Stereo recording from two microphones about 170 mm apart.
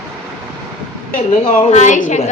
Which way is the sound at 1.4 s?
40° left (ahead or behind).